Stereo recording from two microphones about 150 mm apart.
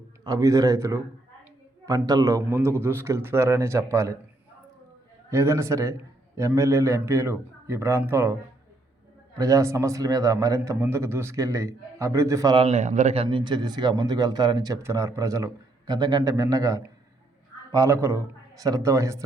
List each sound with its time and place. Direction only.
0.3 s a man's voice: 25° right (ahead or behind)
5.3 s a man's voice: 20° right (ahead or behind)
9.4 s a man's voice: 20° right (ahead or behind)
12.5 s speech: 45° right (ahead or behind)
13.2 s a man's voice: 30° right (ahead or behind)